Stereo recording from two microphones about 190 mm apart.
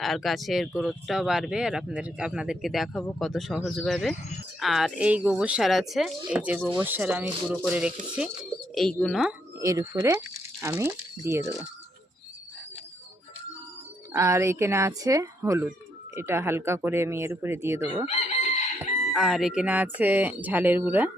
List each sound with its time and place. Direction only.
0.0 s speech: centre (ahead or behind)
9.6 s speech: 15° right (ahead or behind)
14.1 s speech: 15° right (ahead or behind)
18.8 s speech: centre (ahead or behind)